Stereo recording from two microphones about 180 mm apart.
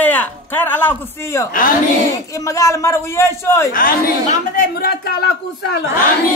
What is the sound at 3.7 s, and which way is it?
A man's voice, 50° left (ahead or behind).